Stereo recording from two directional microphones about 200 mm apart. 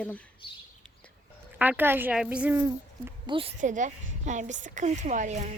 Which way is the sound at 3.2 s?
25° right (ahead or behind).